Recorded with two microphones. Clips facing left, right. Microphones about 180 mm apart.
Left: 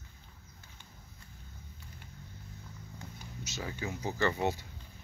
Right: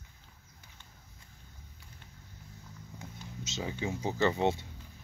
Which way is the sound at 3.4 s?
20° right (ahead or behind).